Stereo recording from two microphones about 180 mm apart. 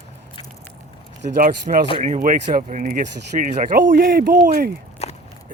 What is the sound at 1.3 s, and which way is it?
Speech, 50° right (ahead or behind).